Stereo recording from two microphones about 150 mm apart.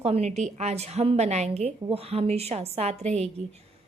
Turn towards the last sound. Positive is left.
turn(degrees=-45)  # may be behind; listen again after turning